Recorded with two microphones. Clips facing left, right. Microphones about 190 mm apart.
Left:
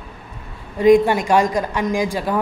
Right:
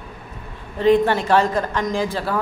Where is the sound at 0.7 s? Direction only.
10° left (ahead or behind).